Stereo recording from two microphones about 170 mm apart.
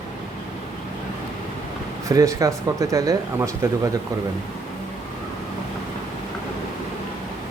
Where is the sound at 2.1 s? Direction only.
20° right (ahead or behind).